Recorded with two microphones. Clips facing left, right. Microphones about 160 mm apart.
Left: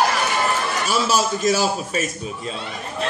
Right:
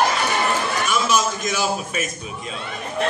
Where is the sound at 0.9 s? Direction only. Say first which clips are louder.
Left 1 dB; 35° left (ahead or behind).